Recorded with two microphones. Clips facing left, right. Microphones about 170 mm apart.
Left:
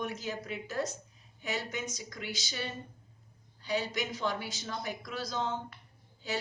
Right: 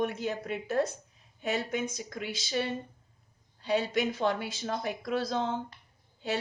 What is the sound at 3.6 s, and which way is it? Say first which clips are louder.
A woman's voice: right 5 dB; 55° right (ahead or behind).